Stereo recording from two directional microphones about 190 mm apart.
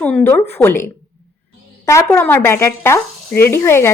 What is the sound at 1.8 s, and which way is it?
A woman's voice, 15° left (ahead or behind).